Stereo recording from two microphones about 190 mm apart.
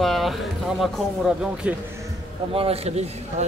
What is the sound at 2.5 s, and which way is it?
Speech, 30° right (ahead or behind).